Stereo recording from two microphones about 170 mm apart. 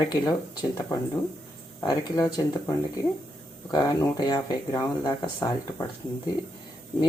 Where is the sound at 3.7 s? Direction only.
25° left (ahead or behind).